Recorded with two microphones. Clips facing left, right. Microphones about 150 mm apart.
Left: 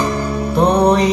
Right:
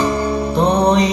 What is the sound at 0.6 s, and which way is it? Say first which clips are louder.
Music: left 2 dB; 5° left (ahead or behind).